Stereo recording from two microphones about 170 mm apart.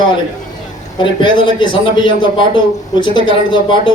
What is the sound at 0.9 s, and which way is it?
A man's voice, 30° left (ahead or behind).